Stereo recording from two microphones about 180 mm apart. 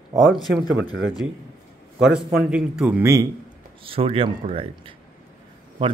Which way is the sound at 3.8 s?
30° right (ahead or behind).